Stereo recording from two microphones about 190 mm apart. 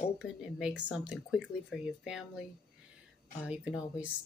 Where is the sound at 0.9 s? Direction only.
5° right (ahead or behind).